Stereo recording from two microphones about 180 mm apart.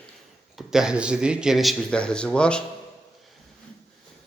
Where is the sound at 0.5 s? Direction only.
5° right (ahead or behind).